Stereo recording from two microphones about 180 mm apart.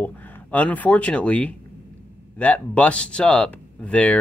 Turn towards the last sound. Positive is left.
turn(degrees=5)  # may be behind; listen again after turning